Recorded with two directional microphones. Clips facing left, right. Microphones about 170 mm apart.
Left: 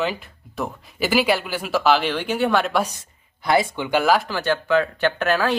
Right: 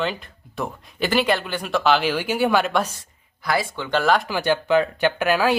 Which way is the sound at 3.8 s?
5° left (ahead or behind).